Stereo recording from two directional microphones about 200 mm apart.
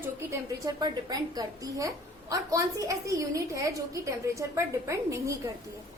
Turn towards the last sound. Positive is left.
turn(degrees=-15)  # may be behind; listen again after turning